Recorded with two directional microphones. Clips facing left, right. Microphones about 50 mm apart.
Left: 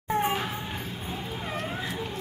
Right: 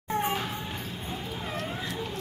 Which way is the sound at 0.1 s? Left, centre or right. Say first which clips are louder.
Left 2 dB; centre.